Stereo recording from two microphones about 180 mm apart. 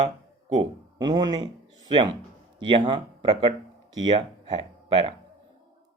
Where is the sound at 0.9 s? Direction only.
20° right (ahead or behind).